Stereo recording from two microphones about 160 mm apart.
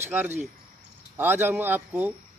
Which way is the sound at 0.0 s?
10° right (ahead or behind).